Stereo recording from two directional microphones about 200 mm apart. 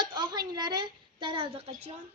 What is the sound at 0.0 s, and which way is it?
A woman's voice, 20° right (ahead or behind).